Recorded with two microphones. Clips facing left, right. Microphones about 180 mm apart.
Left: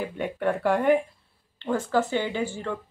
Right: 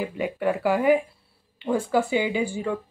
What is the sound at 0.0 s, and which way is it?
Speech, 5° right (ahead or behind).